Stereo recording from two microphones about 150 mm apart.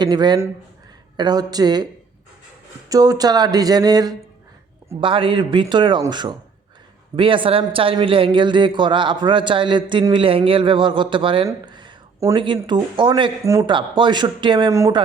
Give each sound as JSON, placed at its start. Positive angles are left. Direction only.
{"t": 0.0, "sound": "speech", "side_deg": -30}
{"t": 2.9, "sound": "a man's voice", "side_deg": -25}
{"t": 11.4, "sound": "a sound", "side_deg": -30}
{"t": 12.3, "sound": "a man's voice", "side_deg": -30}